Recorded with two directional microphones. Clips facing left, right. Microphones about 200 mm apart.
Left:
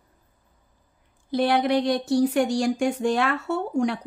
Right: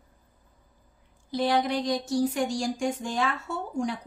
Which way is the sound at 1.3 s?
60° left (ahead or behind).